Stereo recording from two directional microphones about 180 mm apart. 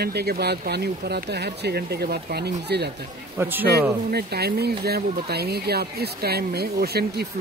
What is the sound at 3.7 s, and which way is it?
Speech, 60° right (ahead or behind).